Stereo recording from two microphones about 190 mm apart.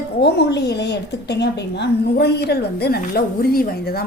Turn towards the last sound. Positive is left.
turn(degrees=55)  # may be behind; listen again after turning